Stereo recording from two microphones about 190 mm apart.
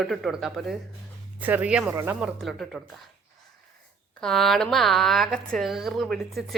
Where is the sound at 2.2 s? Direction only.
Centre (ahead or behind).